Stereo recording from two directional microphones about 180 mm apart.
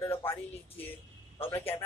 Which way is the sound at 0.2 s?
10° left (ahead or behind).